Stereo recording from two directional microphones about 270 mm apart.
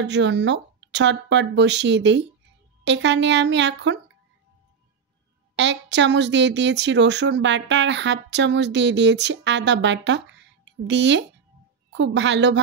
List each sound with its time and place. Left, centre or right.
0.0 s a woman's voice: right
5.6 s a woman's voice: right